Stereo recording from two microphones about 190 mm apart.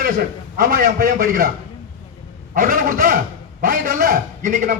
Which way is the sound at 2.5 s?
45° right (ahead or behind).